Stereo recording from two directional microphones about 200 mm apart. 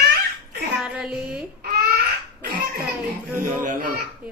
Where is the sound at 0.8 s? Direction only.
Centre (ahead or behind).